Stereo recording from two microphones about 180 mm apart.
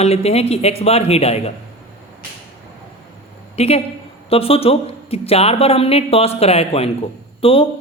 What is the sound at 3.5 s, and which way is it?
A woman's voice, 35° left (ahead or behind).